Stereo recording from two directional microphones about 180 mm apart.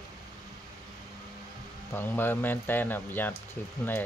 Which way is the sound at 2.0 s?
10° left (ahead or behind).